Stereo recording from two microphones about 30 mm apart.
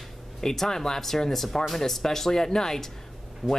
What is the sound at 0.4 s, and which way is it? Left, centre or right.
Speech, centre.